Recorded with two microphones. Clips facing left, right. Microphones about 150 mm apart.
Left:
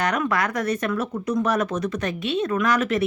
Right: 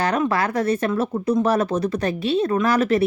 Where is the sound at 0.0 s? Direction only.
30° right (ahead or behind).